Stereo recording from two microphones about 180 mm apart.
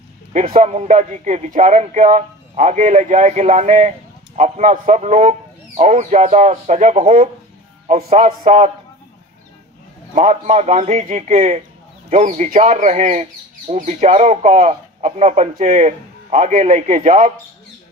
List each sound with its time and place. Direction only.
0.3 s speech: 40° right (ahead or behind)
10.1 s speech: 40° right (ahead or behind)